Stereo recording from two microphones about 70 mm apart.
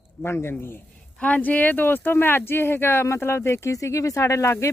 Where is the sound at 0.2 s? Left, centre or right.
Left.